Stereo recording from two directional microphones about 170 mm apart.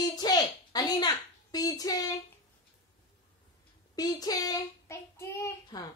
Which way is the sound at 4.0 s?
20° left (ahead or behind).